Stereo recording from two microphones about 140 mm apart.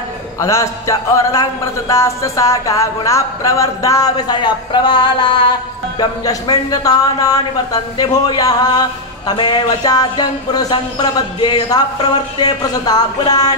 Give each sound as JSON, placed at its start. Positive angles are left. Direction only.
{"t": 0.4, "sound": "speech", "side_deg": 20}
{"t": 3.8, "sound": "a sound", "side_deg": 25}
{"t": 5.9, "sound": "speech", "side_deg": 30}